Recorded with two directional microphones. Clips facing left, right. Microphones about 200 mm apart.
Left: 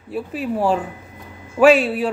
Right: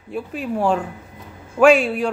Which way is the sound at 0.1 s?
5° left (ahead or behind).